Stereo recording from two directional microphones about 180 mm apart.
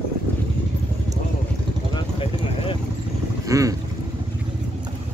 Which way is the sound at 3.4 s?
20° right (ahead or behind).